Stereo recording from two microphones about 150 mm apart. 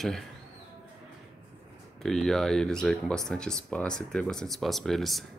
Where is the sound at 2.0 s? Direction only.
Centre (ahead or behind).